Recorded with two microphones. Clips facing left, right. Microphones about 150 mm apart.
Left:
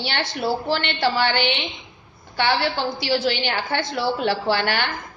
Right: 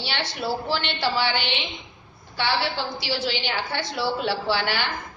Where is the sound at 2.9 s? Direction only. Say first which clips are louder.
Left 5 dB; 55° left (ahead or behind).